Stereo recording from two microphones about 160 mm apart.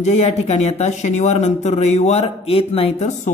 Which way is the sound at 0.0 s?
45° left (ahead or behind).